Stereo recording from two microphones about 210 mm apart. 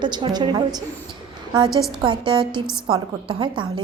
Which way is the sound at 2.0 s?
20° right (ahead or behind).